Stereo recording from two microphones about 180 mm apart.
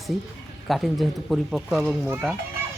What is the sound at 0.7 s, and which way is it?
Speech, centre (ahead or behind).